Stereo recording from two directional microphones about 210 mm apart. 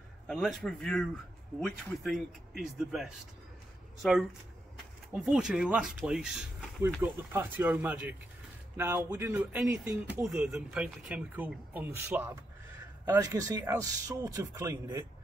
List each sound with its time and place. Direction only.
0.3 s speech: centre (ahead or behind)
5.1 s speech: centre (ahead or behind)